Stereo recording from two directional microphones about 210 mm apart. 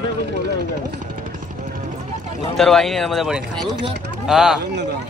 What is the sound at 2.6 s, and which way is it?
Speech, centre (ahead or behind).